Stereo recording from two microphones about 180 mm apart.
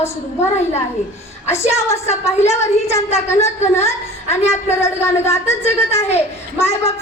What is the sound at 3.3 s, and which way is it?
Speech, 35° left (ahead or behind).